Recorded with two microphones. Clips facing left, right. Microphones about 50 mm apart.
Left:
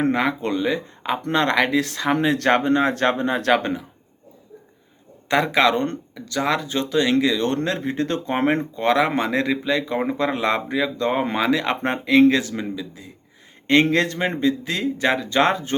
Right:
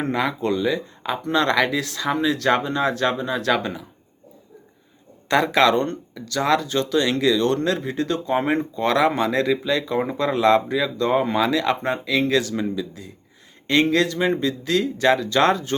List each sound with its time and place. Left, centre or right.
0.1 s speech: left
5.3 s speech: centre; by 8.6 s left
8.7 s speech: left
11.8 s speech: left
12.3 s speech: left
13.9 s speech: left
14.4 s speech: left